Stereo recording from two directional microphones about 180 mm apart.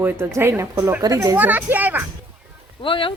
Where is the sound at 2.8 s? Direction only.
30° left (ahead or behind).